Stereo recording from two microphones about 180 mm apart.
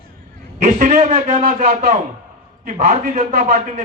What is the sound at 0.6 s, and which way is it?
A man's voice, 40° right (ahead or behind).